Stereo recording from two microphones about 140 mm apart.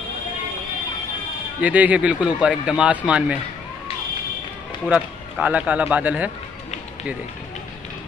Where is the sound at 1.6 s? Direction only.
10° right (ahead or behind).